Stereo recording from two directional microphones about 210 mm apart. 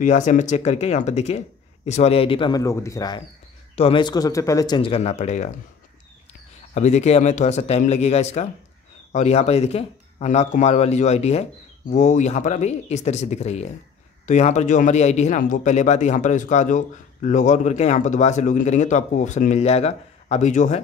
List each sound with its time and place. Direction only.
0.0 s a man's voice: 35° left (ahead or behind)
6.7 s a man's voice: 35° left (ahead or behind)